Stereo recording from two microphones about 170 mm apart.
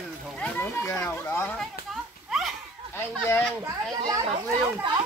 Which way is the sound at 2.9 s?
10° left (ahead or behind).